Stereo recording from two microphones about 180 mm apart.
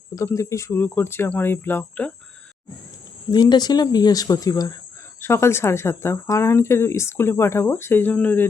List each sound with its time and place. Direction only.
0.2 s a woman's voice: 15° left (ahead or behind)
3.3 s a woman's voice: 25° left (ahead or behind)